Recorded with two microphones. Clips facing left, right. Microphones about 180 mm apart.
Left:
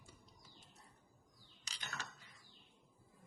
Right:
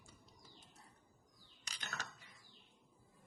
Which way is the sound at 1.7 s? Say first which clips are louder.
Right 1 dB; 55° right (ahead or behind).